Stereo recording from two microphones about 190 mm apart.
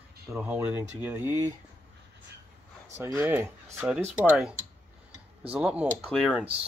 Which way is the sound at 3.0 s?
15° right (ahead or behind).